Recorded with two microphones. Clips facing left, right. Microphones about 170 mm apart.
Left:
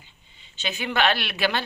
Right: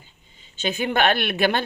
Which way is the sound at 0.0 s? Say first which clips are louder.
Right 2 dB; 45° right (ahead or behind).